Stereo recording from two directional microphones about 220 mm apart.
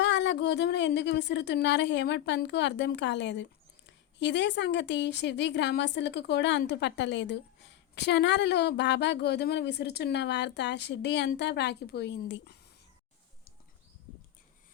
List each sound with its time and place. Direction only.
0.0 s a woman's voice: 55° left (ahead or behind)